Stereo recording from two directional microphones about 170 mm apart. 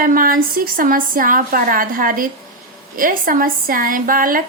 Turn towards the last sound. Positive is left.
turn(degrees=-55)  # may be behind; listen again after turning